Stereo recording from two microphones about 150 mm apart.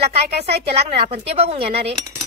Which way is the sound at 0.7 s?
45° right (ahead or behind).